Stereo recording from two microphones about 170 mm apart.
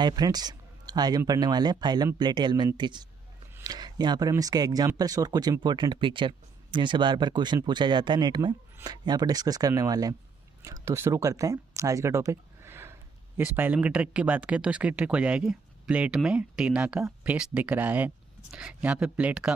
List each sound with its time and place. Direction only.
0.0 s speech: 25° right (ahead or behind); by 19.5 s 5° right (ahead or behind)